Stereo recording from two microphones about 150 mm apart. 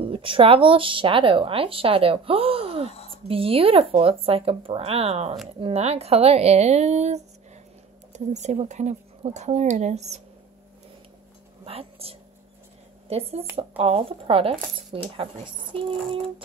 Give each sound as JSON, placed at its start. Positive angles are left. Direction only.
{"t": 0.0, "sound": "speech", "side_deg": -35}
{"t": 2.9, "sound": "a sound", "side_deg": 45}
{"t": 3.3, "sound": "speech", "side_deg": -40}
{"t": 11.6, "sound": "a woman's voice", "side_deg": -40}